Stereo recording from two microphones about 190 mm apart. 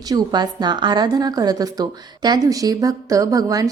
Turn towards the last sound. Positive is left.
turn(degrees=-20)  # may be behind; listen again after turning